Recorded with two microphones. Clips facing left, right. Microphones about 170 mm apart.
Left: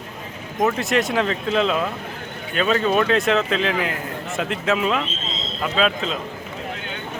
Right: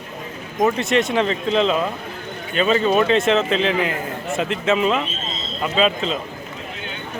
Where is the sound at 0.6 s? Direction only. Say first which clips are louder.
Right 2 dB; centre (ahead or behind).